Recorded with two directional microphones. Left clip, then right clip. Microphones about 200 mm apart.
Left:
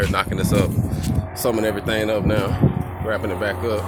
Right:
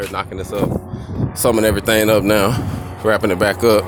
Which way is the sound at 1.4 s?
40° right (ahead or behind).